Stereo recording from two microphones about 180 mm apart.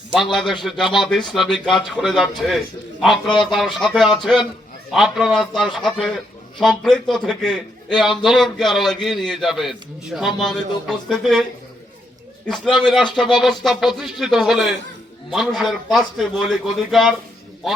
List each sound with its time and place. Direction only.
0.1 s a man's voice: centre (ahead or behind)
12.5 s a man's voice: 5° left (ahead or behind)